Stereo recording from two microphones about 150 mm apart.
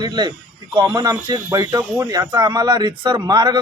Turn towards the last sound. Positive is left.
turn(degrees=-30)  # may be behind; listen again after turning